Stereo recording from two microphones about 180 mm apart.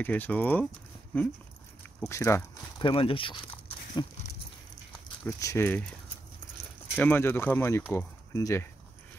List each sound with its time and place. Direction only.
0.0 s speech: 10° left (ahead or behind)
2.8 s speech: 30° left (ahead or behind)
5.2 s speech: 15° left (ahead or behind)
7.0 s speech: 10° left (ahead or behind)